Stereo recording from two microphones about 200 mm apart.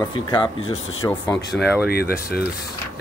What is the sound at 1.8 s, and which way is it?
Speech, 50° left (ahead or behind).